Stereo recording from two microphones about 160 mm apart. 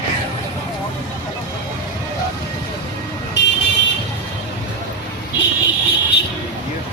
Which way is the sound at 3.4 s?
90° left.